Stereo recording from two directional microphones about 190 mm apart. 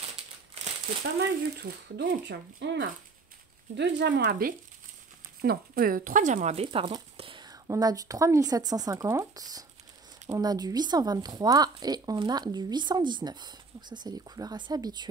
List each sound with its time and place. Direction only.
1.6 s speech: 65° right (ahead or behind); by 15.0 s 20° right (ahead or behind)